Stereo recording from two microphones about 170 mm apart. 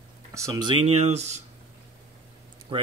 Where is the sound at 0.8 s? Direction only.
40° right (ahead or behind).